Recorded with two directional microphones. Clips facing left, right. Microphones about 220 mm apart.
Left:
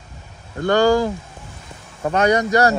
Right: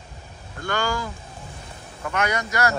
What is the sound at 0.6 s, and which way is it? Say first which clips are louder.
A man's voice: left 12 dB; 35° left (ahead or behind).